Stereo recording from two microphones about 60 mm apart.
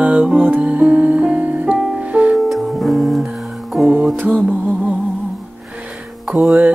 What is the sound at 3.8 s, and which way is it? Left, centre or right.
Music, right.